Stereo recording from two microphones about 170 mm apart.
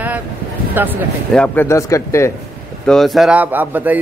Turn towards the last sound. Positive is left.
turn(degrees=-10)  # may be behind; listen again after turning